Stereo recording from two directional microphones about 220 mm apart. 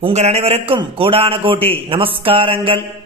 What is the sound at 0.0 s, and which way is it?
A man's voice, 30° right (ahead or behind).